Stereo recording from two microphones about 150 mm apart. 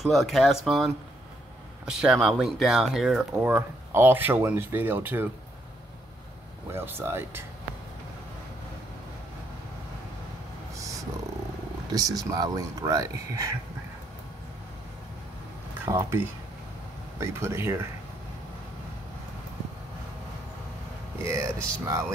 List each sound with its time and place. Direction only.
0.0 s speech: centre (ahead or behind)
3.4 s speech: 15° right (ahead or behind)
6.7 s speech: 15° right (ahead or behind)
10.8 s a sound: 20° right (ahead or behind)
12.2 s speech: 25° right (ahead or behind)
15.8 s speech: 20° right (ahead or behind)
21.2 s speech: 20° right (ahead or behind)